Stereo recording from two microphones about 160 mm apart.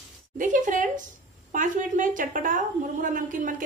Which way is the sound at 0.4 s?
55° right (ahead or behind).